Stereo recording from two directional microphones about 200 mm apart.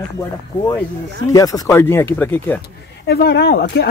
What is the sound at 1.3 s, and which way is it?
Speech, 15° left (ahead or behind).